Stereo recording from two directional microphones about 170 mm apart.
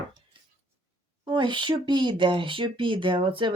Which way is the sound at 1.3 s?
30° right (ahead or behind).